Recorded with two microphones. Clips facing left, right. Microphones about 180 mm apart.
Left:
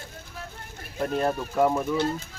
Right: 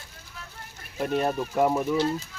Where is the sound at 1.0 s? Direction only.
10° right (ahead or behind).